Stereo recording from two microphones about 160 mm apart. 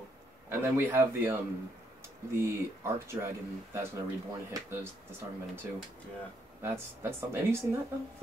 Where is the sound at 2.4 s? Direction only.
15° right (ahead or behind).